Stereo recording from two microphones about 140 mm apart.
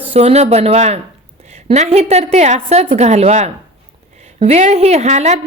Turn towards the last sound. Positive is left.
turn(degrees=-50)  # may be behind; listen again after turning